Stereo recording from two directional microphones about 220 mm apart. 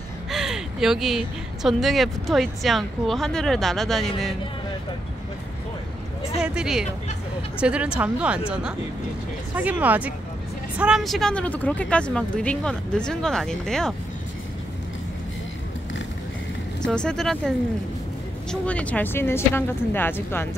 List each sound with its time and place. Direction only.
0.3 s speech: centre (ahead or behind)
6.4 s speech: 5° right (ahead or behind)
16.8 s speech: 5° left (ahead or behind)
18.5 s a woman's voice: 5° left (ahead or behind)